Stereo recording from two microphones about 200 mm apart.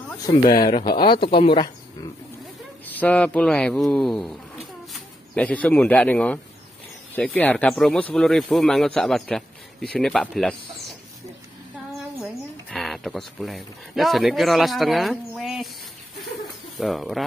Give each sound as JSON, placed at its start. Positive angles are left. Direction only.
{"t": 0.3, "sound": "speech", "side_deg": 20}
{"t": 2.8, "sound": "speech", "side_deg": 10}
{"t": 12.6, "sound": "speech", "side_deg": 0}
{"t": 16.8, "sound": "speech", "side_deg": 0}